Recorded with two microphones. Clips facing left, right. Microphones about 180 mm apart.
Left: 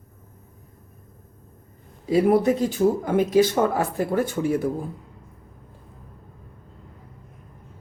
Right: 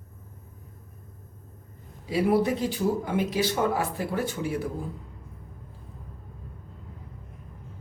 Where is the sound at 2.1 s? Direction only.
50° left (ahead or behind).